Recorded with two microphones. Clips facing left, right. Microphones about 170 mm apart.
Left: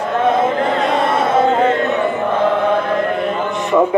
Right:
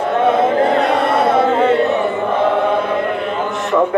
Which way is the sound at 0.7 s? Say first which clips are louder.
Right 2 dB; 65° right (ahead or behind).